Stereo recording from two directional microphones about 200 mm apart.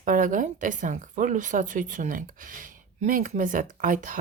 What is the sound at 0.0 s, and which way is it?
Speech, 40° right (ahead or behind).